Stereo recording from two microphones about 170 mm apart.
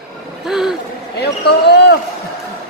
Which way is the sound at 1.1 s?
80° left.